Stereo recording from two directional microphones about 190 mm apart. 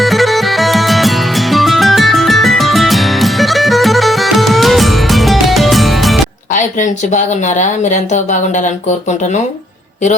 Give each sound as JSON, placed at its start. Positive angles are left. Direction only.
{"t": 0.0, "sound": "music", "side_deg": 0}
{"t": 6.5, "sound": "speech", "side_deg": 40}